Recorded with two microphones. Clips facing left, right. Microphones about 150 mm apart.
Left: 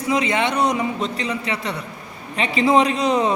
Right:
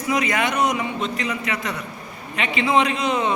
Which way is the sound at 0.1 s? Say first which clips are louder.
Left 2 dB; 25° left (ahead or behind).